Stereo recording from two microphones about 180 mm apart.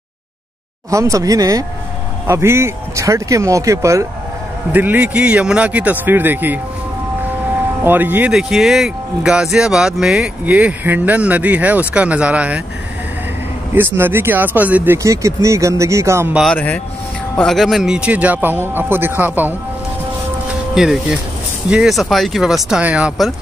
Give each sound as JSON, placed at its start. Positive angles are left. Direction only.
{"t": 0.8, "sound": "speech", "side_deg": -15}
{"t": 7.8, "sound": "speech", "side_deg": -10}
{"t": 13.7, "sound": "speech", "side_deg": -10}
{"t": 16.5, "sound": "speech", "side_deg": 10}
{"t": 20.7, "sound": "speech", "side_deg": -5}